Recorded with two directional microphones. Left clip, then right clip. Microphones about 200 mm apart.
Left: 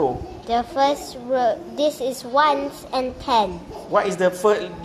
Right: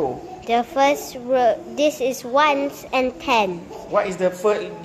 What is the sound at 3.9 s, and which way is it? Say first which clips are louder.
Speech: left 1 dB; 25° left (ahead or behind).